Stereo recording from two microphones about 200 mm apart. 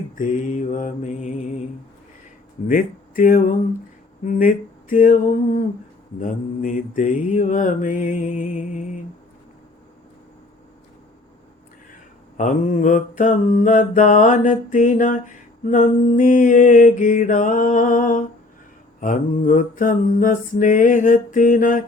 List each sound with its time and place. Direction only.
0.2 s mantra: 40° left (ahead or behind)
2.6 s speech: 45° left (ahead or behind)
4.3 s mantra: 45° left (ahead or behind)
12.4 s mantra: 40° left (ahead or behind)